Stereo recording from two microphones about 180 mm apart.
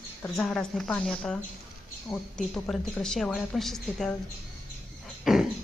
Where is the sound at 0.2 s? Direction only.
5° left (ahead or behind).